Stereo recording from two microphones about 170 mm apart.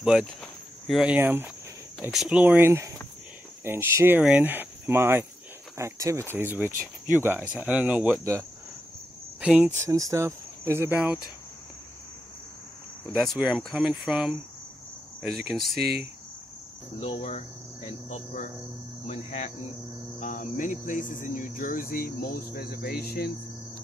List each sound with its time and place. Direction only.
0.0 s speech: centre (ahead or behind)
9.4 s speech: 5° right (ahead or behind)
9.8 s speech: 20° right (ahead or behind)
13.2 s speech: centre (ahead or behind)
17.0 s speech: 35° left (ahead or behind)
20.2 s cricket: 50° left (ahead or behind)
20.8 s speech: 50° left (ahead or behind)